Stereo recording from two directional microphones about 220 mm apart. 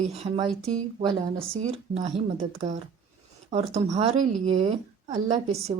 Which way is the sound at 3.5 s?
30° right (ahead or behind).